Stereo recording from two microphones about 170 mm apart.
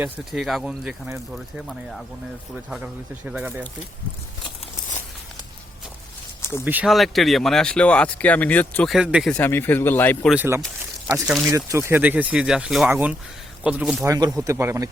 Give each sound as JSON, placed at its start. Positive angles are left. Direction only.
{"t": 0.0, "sound": "speech", "side_deg": 0}
{"t": 6.7, "sound": "speech", "side_deg": -5}
{"t": 9.0, "sound": "speech", "side_deg": -5}
{"t": 9.3, "sound": "a man's voice", "side_deg": 10}
{"t": 10.2, "sound": "speech", "side_deg": -10}
{"t": 11.5, "sound": "speech", "side_deg": -15}
{"t": 14.1, "sound": "speech", "side_deg": -20}